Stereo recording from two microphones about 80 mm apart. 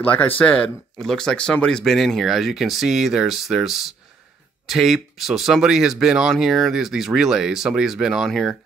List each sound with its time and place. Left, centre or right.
0.1 s speech: centre